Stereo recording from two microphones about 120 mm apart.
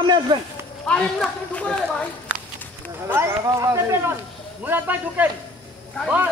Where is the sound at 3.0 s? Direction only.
20° right (ahead or behind).